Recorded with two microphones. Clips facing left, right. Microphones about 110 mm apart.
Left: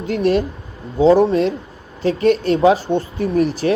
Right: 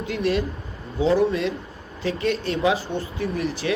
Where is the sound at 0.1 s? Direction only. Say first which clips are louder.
Left 7 dB; 35° left (ahead or behind).